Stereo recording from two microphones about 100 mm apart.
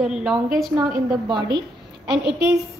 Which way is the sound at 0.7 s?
45° right (ahead or behind).